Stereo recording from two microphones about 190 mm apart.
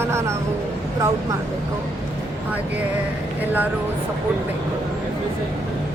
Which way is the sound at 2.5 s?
10° right (ahead or behind).